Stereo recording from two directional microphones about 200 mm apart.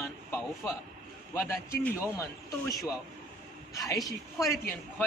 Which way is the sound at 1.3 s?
10° left (ahead or behind).